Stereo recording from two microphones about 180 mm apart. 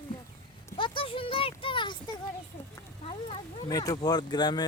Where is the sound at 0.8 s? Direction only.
30° left (ahead or behind).